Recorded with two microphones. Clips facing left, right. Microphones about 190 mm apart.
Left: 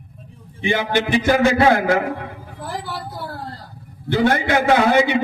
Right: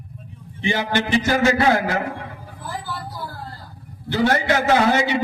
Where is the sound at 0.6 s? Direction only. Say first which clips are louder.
Left 2 dB; 55° left (ahead or behind).